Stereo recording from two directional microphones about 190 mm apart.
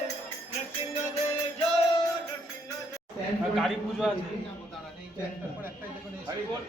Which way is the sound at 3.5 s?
Centre (ahead or behind).